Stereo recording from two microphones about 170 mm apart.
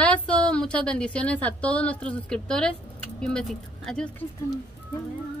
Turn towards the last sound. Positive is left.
turn(degrees=5)  # may be behind; listen again after turning